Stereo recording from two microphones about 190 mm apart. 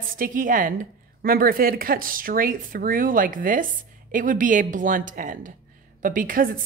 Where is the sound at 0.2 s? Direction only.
45° right (ahead or behind).